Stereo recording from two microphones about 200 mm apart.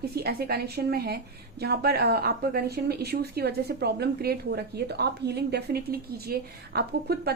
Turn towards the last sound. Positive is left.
turn(degrees=-50)  # may be behind; listen again after turning